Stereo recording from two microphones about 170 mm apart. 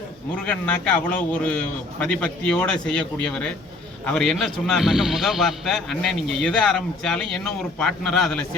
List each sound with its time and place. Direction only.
0.4 s a man's voice: 10° left (ahead or behind)